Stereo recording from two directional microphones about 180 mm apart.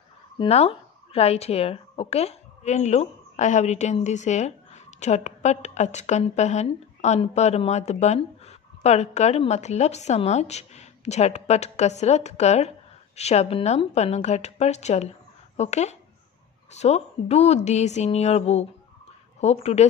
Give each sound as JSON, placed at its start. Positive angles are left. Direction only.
{"t": 0.4, "sound": "a woman's voice", "side_deg": 30}